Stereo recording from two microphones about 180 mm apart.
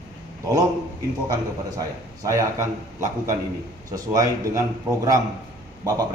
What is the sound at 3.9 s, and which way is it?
Speech, 20° right (ahead or behind).